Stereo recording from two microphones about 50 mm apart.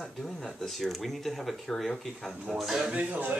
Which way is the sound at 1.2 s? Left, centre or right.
Centre.